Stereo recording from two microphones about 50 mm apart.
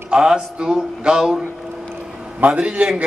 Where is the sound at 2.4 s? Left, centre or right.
Right.